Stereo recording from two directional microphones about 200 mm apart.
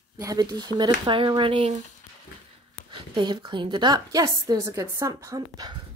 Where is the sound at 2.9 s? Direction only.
25° right (ahead or behind).